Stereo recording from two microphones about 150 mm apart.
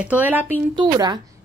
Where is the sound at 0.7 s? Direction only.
30° right (ahead or behind).